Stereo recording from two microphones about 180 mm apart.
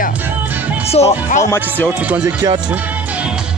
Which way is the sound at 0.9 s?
40° left (ahead or behind).